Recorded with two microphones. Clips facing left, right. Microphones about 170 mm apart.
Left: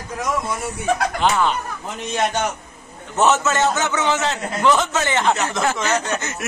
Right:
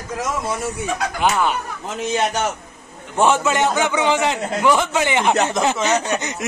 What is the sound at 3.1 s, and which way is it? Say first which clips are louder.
Speech: right 1 dB; 10° right (ahead or behind).